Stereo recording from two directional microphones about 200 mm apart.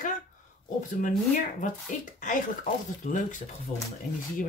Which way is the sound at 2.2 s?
40° left (ahead or behind).